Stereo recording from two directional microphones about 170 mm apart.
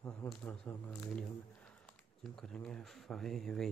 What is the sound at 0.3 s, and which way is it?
Speech, 10° left (ahead or behind).